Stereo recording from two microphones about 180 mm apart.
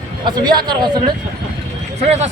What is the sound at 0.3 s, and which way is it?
Speech, 25° right (ahead or behind).